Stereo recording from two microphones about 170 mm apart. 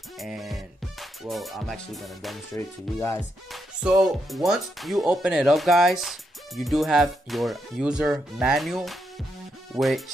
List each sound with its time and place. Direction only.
0.2 s music: centre (ahead or behind)
1.2 s speech: centre (ahead or behind)
2.5 s music: 15° left (ahead or behind)
3.2 s speech: 5° right (ahead or behind)